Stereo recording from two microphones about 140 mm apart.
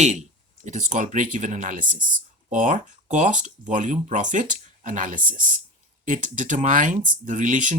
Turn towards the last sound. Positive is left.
turn(degrees=-65)  # may be behind; listen again after turning